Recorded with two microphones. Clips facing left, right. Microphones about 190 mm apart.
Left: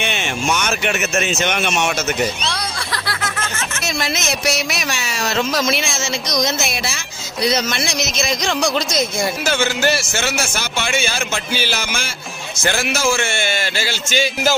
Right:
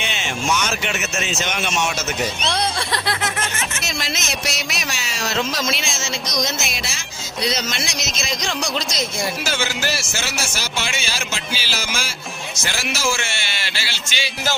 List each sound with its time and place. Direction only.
0.0 s speech: 55° left (ahead or behind)
2.5 s music: 25° right (ahead or behind)
3.8 s a man's voice: 60° left (ahead or behind)